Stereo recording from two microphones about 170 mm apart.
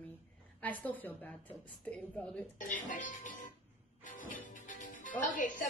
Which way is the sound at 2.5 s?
50° left (ahead or behind).